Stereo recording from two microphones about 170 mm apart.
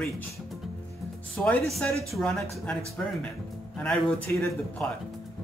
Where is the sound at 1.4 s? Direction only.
5° left (ahead or behind).